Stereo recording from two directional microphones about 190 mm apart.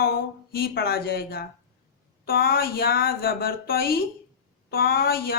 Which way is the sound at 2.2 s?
50° left (ahead or behind).